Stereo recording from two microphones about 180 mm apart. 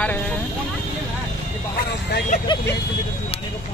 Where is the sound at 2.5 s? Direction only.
25° left (ahead or behind).